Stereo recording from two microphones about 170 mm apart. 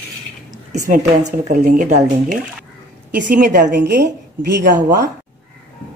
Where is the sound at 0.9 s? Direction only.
45° right (ahead or behind).